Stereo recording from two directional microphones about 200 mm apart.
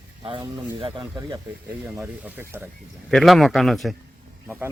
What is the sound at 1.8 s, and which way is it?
Speech, 10° right (ahead or behind).